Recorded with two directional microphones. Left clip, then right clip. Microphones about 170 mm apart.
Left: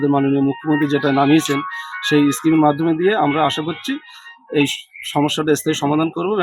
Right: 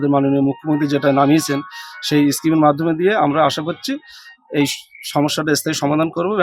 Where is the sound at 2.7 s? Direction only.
15° right (ahead or behind).